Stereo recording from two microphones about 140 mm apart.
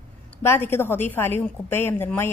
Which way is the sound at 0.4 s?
15° left (ahead or behind).